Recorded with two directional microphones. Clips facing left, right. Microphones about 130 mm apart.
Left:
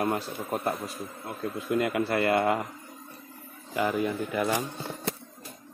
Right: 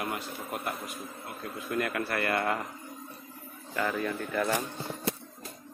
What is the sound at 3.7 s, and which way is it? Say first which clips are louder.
Speech: left 4 dB; 15° left (ahead or behind).